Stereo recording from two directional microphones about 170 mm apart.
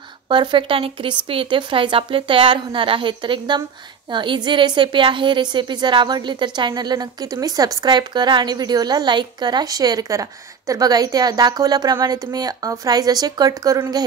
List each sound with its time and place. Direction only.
0.3 s a woman's voice: 25° right (ahead or behind)